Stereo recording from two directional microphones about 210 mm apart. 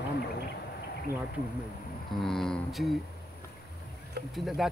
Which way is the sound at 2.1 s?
Centre (ahead or behind).